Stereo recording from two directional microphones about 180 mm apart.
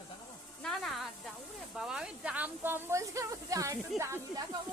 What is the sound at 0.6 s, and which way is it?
Speech, centre (ahead or behind).